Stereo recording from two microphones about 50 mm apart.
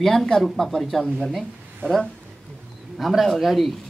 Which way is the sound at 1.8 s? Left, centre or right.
Right.